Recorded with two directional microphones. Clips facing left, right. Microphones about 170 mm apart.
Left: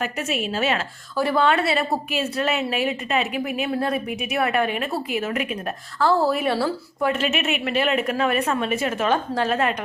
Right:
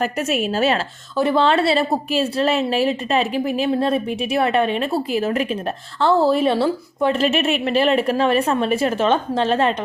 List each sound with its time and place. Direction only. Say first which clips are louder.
0.0 s a woman's voice: right 5 dB; 40° right (ahead or behind)
1.1 s a woman's voice: right 3 dB; 20° right (ahead or behind)